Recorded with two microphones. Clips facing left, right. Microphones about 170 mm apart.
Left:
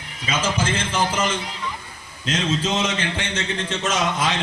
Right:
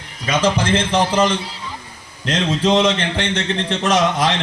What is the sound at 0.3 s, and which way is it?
A man's voice, 70° right (ahead or behind).